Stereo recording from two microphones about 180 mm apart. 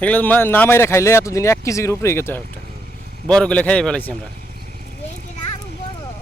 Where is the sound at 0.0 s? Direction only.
10° left (ahead or behind).